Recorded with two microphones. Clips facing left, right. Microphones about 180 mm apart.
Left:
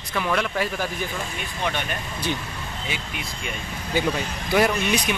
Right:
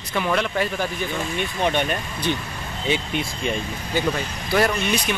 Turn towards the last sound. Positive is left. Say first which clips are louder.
# even
turn(degrees=15)  # may be behind; listen again after turning